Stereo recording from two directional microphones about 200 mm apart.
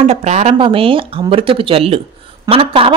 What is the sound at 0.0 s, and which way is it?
A woman's voice, 35° right (ahead or behind).